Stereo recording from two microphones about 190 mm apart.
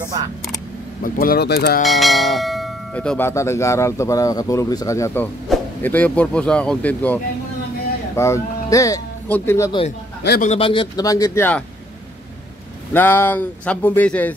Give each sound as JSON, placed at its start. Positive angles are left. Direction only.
{"t": 1.0, "sound": "speech", "side_deg": 50}
{"t": 1.9, "sound": "bell", "side_deg": 0}
{"t": 8.2, "sound": "speech", "side_deg": 15}
{"t": 10.4, "sound": "speech", "side_deg": 30}
{"t": 12.9, "sound": "bell", "side_deg": 10}